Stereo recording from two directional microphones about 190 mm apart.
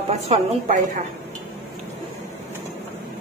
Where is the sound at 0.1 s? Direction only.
35° right (ahead or behind).